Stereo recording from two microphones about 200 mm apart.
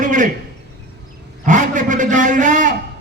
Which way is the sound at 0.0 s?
40° right (ahead or behind).